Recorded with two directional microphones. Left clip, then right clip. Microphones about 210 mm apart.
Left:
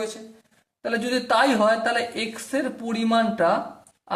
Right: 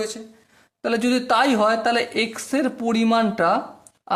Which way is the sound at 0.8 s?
40° right (ahead or behind).